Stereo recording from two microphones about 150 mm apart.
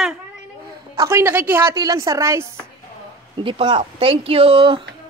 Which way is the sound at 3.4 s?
35° right (ahead or behind).